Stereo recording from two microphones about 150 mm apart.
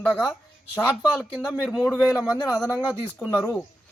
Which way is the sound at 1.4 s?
Centre (ahead or behind).